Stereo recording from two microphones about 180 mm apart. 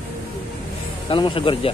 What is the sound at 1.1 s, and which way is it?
Speech, 30° left (ahead or behind).